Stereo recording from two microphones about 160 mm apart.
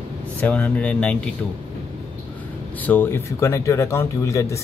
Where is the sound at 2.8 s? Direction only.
10° left (ahead or behind).